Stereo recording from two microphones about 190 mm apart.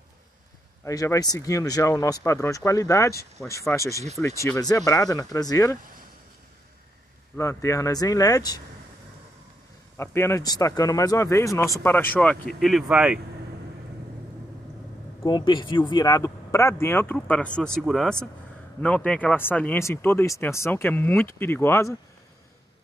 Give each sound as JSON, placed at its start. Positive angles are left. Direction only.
{"t": 0.8, "sound": "speech", "side_deg": 15}
{"t": 7.3, "sound": "speech", "side_deg": 15}
{"t": 9.9, "sound": "speech", "side_deg": 15}
{"t": 15.2, "sound": "speech", "side_deg": 25}